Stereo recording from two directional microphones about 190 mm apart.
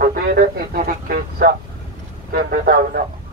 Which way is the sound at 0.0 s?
45° right (ahead or behind).